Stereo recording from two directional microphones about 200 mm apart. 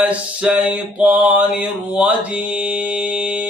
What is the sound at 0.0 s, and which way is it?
Mantra, 5° right (ahead or behind).